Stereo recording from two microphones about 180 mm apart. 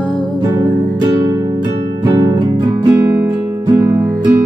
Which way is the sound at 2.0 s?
20° right (ahead or behind).